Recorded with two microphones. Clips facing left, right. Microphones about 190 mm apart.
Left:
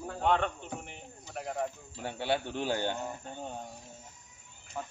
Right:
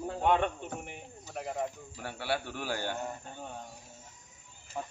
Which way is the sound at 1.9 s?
20° left (ahead or behind).